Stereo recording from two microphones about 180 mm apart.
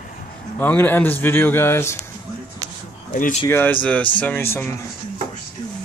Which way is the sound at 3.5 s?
10° left (ahead or behind).